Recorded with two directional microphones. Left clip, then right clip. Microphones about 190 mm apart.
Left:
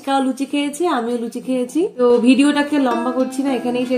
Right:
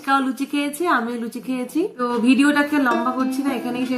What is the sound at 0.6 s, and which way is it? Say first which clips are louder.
Speech: left 1 dB; 30° right (ahead or behind).